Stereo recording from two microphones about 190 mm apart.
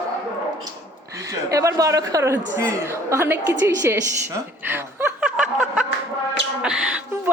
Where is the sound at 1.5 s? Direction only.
15° right (ahead or behind).